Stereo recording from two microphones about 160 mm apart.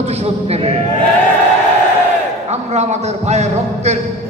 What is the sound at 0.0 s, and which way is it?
Speech, 40° right (ahead or behind).